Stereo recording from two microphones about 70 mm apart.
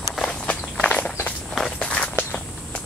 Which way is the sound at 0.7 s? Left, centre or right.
Centre.